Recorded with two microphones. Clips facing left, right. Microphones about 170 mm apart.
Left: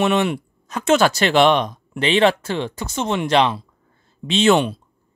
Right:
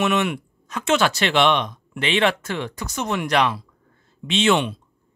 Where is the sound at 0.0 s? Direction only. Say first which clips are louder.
Left 3 dB; 30° left (ahead or behind).